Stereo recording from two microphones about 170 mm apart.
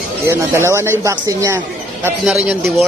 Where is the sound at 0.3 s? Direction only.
15° right (ahead or behind).